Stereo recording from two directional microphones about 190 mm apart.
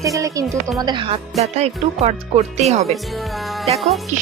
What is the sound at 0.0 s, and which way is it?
Speech, 15° right (ahead or behind).